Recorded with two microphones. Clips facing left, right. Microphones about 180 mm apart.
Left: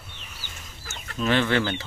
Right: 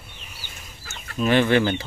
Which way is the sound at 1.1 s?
15° right (ahead or behind).